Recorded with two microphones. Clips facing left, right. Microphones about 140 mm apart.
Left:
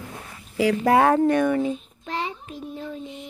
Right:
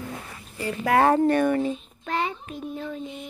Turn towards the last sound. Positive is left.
turn(degrees=25)  # may be behind; listen again after turning